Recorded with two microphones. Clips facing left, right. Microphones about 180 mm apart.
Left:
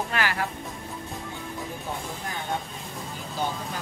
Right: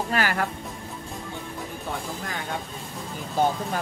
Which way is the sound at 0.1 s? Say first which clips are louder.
Right 5 dB; 45° right (ahead or behind).